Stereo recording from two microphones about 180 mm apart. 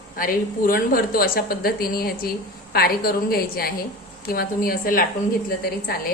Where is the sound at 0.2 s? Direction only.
50° left (ahead or behind).